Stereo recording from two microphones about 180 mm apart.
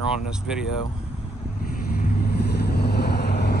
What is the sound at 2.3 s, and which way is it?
Vehicle, 65° left (ahead or behind).